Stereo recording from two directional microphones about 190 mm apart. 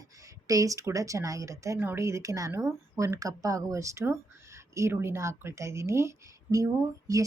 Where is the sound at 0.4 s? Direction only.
15° right (ahead or behind).